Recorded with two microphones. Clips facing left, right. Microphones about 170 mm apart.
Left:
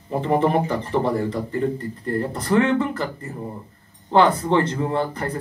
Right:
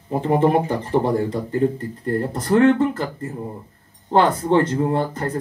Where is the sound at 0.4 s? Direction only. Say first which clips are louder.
Right 4 dB; 50° right (ahead or behind).